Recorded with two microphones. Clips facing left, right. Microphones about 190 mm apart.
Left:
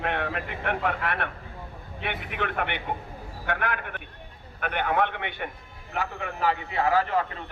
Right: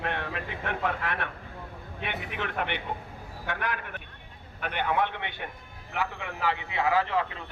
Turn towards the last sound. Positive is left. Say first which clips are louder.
# left 2 dB
turn(degrees=45)  # may be behind; listen again after turning